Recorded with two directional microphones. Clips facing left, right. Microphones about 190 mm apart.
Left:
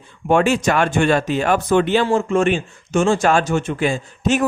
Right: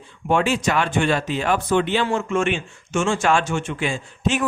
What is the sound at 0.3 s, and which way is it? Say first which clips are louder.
Speech: left 4 dB; 45° left (ahead or behind).